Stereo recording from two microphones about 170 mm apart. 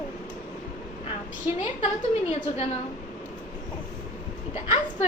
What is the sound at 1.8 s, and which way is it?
Speech, 35° left (ahead or behind).